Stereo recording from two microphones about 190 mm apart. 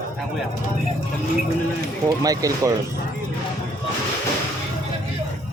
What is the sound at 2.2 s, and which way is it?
Speech, 20° right (ahead or behind).